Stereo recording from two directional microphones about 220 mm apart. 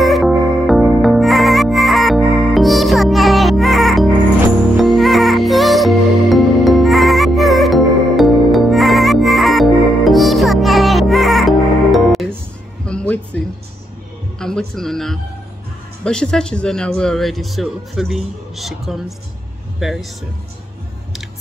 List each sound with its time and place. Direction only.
0.0 s music: centre (ahead or behind)
14.4 s music: centre (ahead or behind)
16.0 s speech: 5° left (ahead or behind)